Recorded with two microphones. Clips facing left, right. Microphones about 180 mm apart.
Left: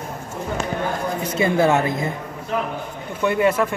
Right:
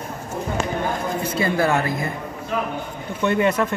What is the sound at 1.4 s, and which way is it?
Speech, 20° left (ahead or behind).